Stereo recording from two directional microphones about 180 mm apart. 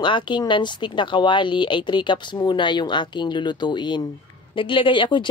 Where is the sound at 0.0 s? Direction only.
25° left (ahead or behind).